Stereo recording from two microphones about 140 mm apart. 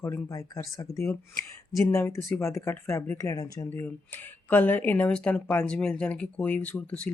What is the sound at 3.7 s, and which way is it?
Speech, 15° left (ahead or behind).